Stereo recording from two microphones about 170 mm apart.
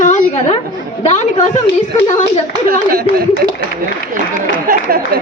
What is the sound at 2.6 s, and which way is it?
Speech, 60° right (ahead or behind).